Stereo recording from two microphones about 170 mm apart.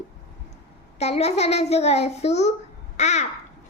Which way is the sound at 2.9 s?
40° left (ahead or behind).